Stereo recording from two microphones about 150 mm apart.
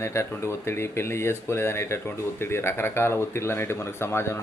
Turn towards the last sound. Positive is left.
turn(degrees=15)  # may be behind; listen again after turning